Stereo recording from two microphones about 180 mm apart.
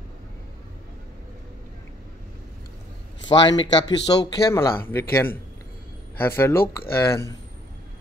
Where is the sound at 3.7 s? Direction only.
20° left (ahead or behind).